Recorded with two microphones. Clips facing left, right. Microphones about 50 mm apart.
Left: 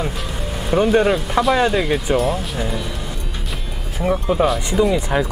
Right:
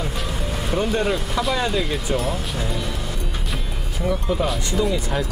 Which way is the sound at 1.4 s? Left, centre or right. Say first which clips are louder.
Left 8 dB; left.